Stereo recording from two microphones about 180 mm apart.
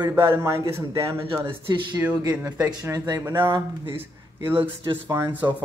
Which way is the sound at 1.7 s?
25° right (ahead or behind).